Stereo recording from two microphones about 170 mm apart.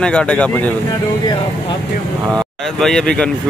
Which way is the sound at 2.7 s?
5° left (ahead or behind).